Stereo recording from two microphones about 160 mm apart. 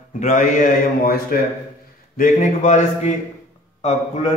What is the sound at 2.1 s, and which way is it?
A man's voice, 55° left (ahead or behind).